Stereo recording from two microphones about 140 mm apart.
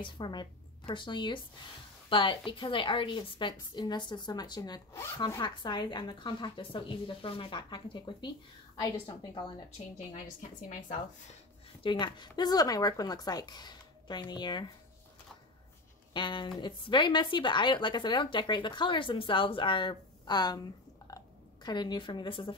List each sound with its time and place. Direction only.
0.0 s speech: 35° left (ahead or behind)
11.8 s a woman's voice: 35° left (ahead or behind)
16.1 s speech: 35° left (ahead or behind)
21.1 s a sound: 25° left (ahead or behind)
21.6 s speech: 30° left (ahead or behind)